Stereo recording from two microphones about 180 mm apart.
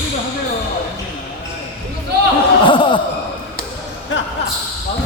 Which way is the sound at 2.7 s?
25° left (ahead or behind).